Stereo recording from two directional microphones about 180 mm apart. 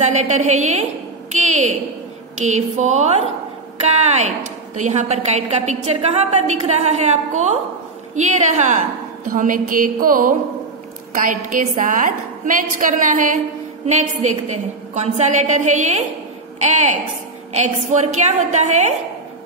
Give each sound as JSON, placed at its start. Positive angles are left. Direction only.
{"t": 0.0, "sound": "a woman's voice", "side_deg": -40}
{"t": 14.5, "sound": "a woman's voice", "side_deg": -40}